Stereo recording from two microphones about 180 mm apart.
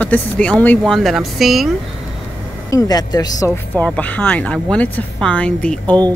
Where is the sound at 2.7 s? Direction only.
20° left (ahead or behind).